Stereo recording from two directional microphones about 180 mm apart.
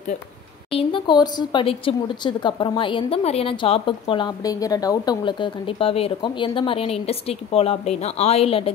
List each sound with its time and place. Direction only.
0.7 s speech: 30° left (ahead or behind)